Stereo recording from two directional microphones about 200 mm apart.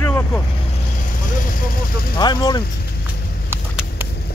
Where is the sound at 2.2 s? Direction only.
20° left (ahead or behind).